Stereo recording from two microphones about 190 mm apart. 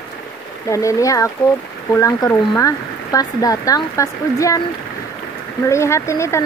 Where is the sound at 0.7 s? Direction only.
15° left (ahead or behind).